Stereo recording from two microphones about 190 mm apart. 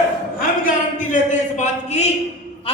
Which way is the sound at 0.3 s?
45° left (ahead or behind).